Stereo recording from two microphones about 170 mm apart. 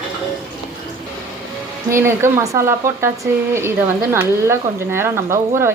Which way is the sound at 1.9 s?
15° right (ahead or behind).